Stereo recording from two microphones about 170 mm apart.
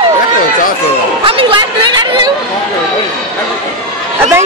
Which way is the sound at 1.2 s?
30° right (ahead or behind).